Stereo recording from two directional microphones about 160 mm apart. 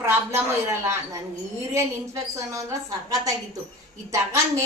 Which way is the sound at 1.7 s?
20° right (ahead or behind).